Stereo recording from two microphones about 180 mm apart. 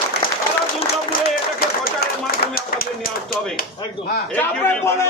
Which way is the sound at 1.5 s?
55° left (ahead or behind).